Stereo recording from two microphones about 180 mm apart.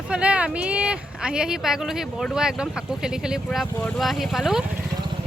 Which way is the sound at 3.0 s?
5° right (ahead or behind).